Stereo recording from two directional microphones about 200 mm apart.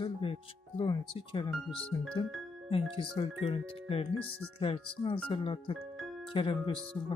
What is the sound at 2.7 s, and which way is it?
Speech, 25° left (ahead or behind).